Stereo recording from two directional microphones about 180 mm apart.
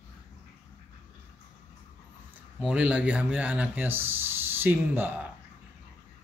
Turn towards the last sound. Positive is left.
turn(degrees=-10)  # may be behind; listen again after turning